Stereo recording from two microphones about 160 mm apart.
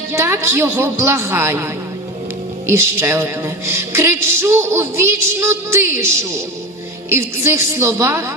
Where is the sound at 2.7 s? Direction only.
15° right (ahead or behind).